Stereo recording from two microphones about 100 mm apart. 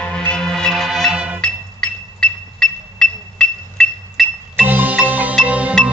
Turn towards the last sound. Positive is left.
turn(degrees=-15)  # may be behind; listen again after turning